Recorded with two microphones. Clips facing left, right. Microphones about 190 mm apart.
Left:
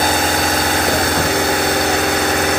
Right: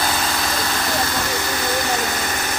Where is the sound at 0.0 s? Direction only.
50° left (ahead or behind).